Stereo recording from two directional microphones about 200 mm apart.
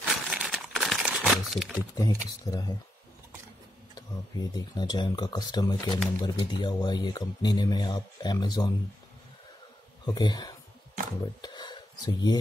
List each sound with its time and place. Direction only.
0.1 s crumpling: centre (ahead or behind)
2.0 s speech: 20° left (ahead or behind)
3.9 s speech: 20° left (ahead or behind)
10.0 s speech: 20° left (ahead or behind)
11.4 s a sound: 20° left (ahead or behind)